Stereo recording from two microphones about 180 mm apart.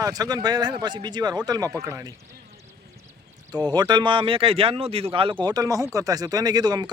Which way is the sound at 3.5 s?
20° right (ahead or behind).